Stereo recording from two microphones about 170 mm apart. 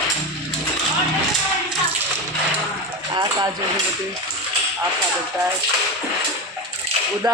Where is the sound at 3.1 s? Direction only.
20° right (ahead or behind).